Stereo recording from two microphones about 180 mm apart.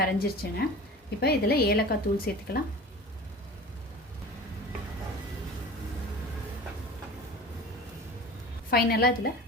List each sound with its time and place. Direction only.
0.0 s a woman's voice: 60° left (ahead or behind)
8.7 s a woman's voice: 60° left (ahead or behind)